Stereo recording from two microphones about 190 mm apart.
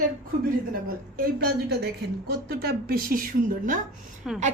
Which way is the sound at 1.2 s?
55° right (ahead or behind).